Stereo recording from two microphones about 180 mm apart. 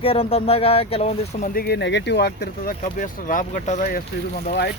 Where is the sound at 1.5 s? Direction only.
60° left (ahead or behind).